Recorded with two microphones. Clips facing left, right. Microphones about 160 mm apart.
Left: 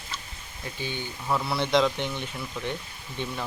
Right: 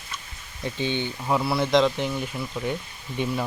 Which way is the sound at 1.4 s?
5° right (ahead or behind).